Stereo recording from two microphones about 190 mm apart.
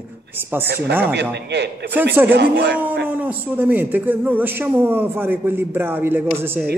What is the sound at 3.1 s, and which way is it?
A man's voice, 10° right (ahead or behind).